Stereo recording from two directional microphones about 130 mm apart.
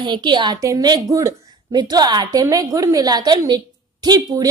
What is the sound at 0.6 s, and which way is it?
A woman's voice, 25° right (ahead or behind).